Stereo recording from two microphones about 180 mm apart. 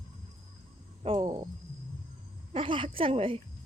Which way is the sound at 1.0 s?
30° right (ahead or behind).